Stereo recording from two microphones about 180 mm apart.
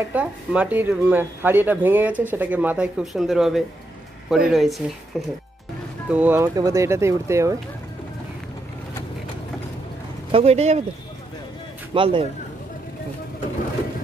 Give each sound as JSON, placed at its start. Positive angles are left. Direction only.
{"t": 0.1, "sound": "speech", "side_deg": -5}
{"t": 6.0, "sound": "speech", "side_deg": -10}
{"t": 10.3, "sound": "speech", "side_deg": -35}
{"t": 11.9, "sound": "speech", "side_deg": -30}